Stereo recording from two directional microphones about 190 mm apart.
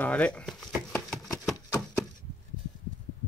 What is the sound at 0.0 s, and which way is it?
Speech, 5° left (ahead or behind).